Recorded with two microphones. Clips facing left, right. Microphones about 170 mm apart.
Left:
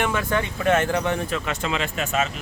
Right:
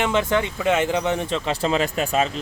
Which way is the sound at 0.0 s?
20° right (ahead or behind).